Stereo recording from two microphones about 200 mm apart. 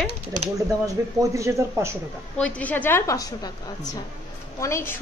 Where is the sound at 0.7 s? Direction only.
15° right (ahead or behind).